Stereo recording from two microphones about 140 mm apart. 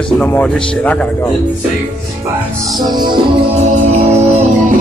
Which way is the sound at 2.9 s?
30° right (ahead or behind).